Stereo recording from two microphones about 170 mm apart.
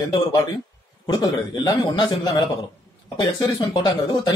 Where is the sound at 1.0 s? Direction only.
25° left (ahead or behind).